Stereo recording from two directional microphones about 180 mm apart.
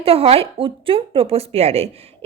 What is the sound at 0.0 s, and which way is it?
A woman's voice, 35° right (ahead or behind).